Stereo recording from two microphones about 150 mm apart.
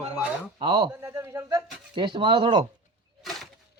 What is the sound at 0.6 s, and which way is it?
Speech, 30° right (ahead or behind).